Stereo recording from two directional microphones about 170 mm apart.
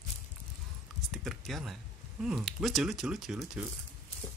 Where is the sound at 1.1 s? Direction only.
Centre (ahead or behind).